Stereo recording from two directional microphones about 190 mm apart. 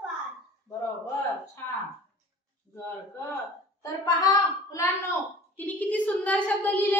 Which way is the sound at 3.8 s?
20° left (ahead or behind).